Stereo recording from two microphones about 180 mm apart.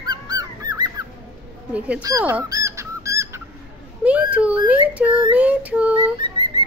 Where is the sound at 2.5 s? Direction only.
15° right (ahead or behind).